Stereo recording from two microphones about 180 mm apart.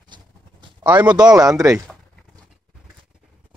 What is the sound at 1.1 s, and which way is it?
Speech, 20° right (ahead or behind).